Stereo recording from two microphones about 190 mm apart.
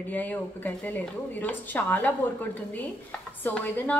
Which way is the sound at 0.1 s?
10° left (ahead or behind).